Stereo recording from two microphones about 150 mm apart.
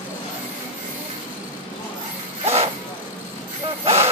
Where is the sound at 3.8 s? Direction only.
40° right (ahead or behind).